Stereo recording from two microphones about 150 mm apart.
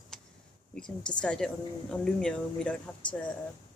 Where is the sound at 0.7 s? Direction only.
5° left (ahead or behind).